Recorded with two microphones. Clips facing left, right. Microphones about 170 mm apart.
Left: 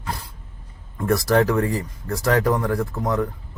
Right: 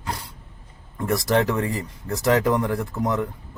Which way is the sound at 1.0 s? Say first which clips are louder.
Left 2 dB; 20° right (ahead or behind).